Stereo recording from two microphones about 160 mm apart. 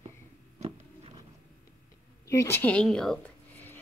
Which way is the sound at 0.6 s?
40° right (ahead or behind).